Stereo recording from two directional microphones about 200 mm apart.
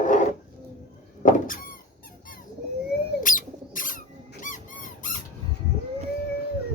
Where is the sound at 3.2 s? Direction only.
40° left (ahead or behind).